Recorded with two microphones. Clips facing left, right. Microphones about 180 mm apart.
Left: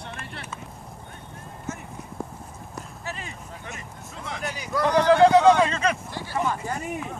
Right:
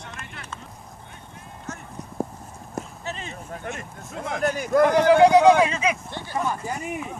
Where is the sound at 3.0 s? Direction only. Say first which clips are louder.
Right 2 dB; 25° right (ahead or behind).